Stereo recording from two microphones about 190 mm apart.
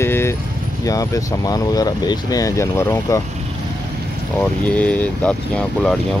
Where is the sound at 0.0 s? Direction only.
15° left (ahead or behind).